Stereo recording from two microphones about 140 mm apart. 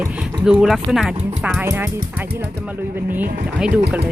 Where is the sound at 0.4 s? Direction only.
5° right (ahead or behind).